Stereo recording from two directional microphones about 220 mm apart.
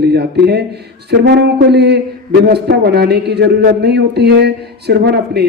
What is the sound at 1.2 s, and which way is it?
A man's voice, 50° right (ahead or behind).